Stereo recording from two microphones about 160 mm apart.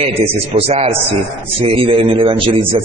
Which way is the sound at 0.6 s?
40° right (ahead or behind).